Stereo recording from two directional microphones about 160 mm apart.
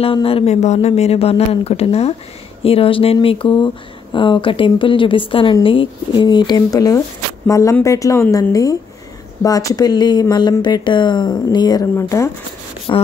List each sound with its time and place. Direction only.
0.0 s speech: 35° left (ahead or behind)